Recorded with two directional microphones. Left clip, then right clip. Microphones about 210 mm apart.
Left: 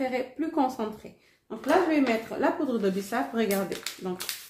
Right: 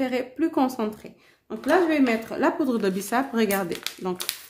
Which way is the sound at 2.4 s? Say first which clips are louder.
Right 4 dB; 45° right (ahead or behind).